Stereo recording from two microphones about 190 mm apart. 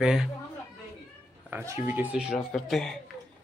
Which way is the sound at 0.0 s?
Centre (ahead or behind).